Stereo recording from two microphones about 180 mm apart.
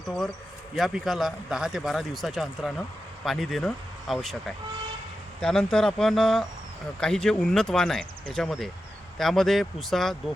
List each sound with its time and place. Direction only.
0.8 s speech: centre (ahead or behind)